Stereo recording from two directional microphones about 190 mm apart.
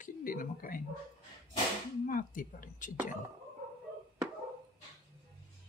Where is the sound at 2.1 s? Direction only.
45° left (ahead or behind).